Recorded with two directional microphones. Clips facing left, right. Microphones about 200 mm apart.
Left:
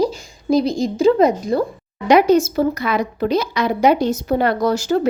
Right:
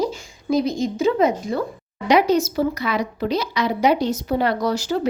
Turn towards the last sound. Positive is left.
turn(degrees=45)  # may be behind; listen again after turning